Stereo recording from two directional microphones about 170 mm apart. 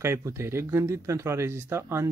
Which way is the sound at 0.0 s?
15° right (ahead or behind).